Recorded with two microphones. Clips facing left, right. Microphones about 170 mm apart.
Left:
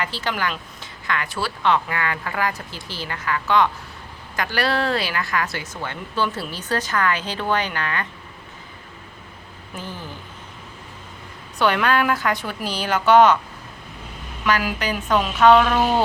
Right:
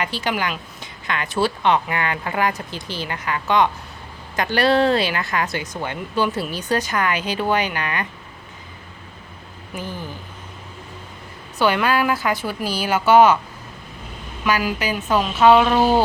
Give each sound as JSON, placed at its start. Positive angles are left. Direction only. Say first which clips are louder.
{"t": 0.0, "sound": "speech", "louder": "right 2 dB", "side_deg": -15}
{"t": 11.6, "sound": "speech", "louder": "right 1 dB", "side_deg": -5}
{"t": 14.4, "sound": "a woman's voice", "louder": "right 1 dB", "side_deg": -10}